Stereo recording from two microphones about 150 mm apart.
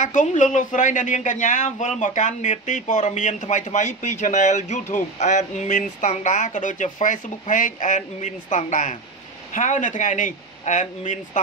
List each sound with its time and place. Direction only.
0.0 s speech: 55° left (ahead or behind)